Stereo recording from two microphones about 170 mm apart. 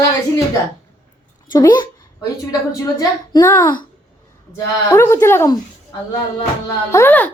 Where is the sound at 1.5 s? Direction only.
25° left (ahead or behind).